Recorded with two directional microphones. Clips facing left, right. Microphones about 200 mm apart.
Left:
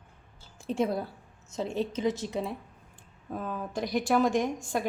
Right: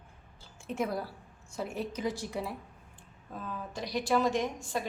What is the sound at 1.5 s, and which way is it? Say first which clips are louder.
A woman's voice: left 5 dB; 25° left (ahead or behind).